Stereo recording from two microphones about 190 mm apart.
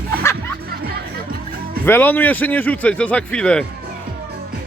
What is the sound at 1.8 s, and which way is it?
Speech, 10° left (ahead or behind).